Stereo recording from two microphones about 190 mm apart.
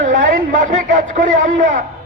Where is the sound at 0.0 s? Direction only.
45° right (ahead or behind).